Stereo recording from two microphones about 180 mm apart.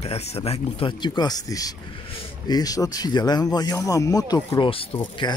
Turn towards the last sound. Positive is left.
turn(degrees=25)  # may be behind; listen again after turning